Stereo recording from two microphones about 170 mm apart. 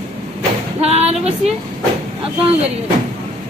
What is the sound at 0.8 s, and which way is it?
Speech, 35° right (ahead or behind).